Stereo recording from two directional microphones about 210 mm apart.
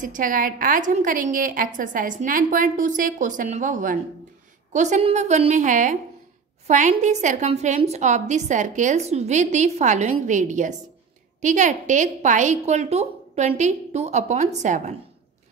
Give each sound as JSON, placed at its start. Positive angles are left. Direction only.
{"t": 0.0, "sound": "a woman's voice", "side_deg": -40}